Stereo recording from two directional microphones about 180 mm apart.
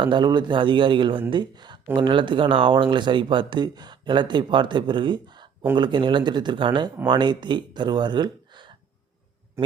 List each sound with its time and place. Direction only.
0.0 s speech: 25° right (ahead or behind)
9.6 s speech: 15° right (ahead or behind)